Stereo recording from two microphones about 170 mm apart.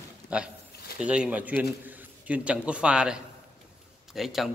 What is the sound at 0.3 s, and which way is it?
A man's voice, 5° right (ahead or behind).